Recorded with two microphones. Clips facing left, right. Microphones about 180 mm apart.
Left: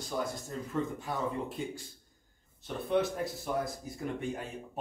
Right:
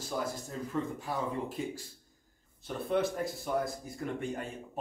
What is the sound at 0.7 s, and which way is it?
Speech, centre (ahead or behind).